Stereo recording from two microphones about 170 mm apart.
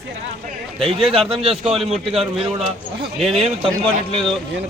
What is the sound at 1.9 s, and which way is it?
Speech, 35° right (ahead or behind).